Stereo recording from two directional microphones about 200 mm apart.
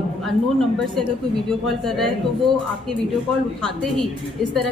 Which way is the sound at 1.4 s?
Centre (ahead or behind).